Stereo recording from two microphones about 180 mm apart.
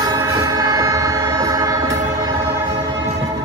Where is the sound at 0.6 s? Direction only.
20° right (ahead or behind).